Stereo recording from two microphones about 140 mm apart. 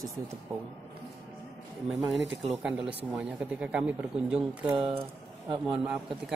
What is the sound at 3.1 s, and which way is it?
Speech, 5° right (ahead or behind).